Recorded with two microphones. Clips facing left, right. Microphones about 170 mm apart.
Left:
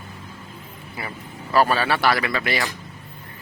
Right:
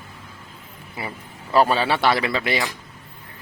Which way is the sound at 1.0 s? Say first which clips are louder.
Right 1 dB; 15° right (ahead or behind).